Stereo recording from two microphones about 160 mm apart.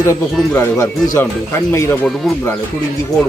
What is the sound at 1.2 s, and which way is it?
Speech, 20° left (ahead or behind).